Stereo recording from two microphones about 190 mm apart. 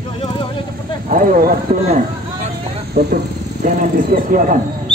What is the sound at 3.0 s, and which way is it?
Speech, 55° right (ahead or behind).